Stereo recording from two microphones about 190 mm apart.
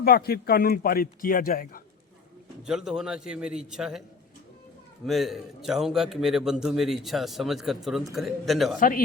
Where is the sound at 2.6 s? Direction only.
Centre (ahead or behind).